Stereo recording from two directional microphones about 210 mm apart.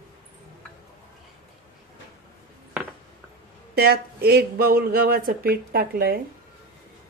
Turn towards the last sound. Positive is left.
turn(degrees=-45)  # may be behind; listen again after turning